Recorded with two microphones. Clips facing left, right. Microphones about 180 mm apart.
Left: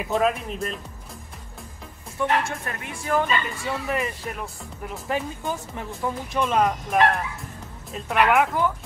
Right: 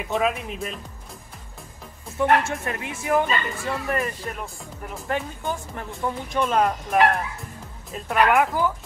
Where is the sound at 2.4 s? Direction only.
25° right (ahead or behind).